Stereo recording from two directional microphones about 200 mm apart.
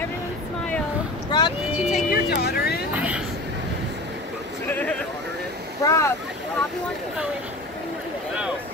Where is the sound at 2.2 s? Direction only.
50° left (ahead or behind).